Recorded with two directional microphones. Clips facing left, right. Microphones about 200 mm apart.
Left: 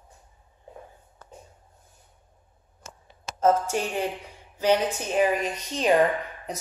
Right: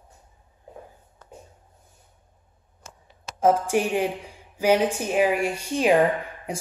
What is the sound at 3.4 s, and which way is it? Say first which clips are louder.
Speech: right 2 dB; 15° right (ahead or behind).